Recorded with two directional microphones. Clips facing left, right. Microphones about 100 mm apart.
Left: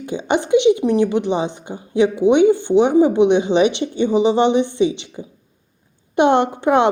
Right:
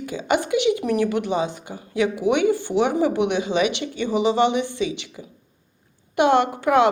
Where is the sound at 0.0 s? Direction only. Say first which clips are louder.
Left 3 dB; 25° left (ahead or behind).